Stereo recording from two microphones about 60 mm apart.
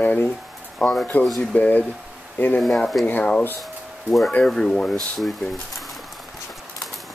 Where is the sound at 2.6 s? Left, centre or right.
Centre.